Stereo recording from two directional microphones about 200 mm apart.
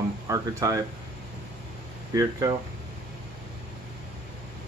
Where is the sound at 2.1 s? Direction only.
20° right (ahead or behind).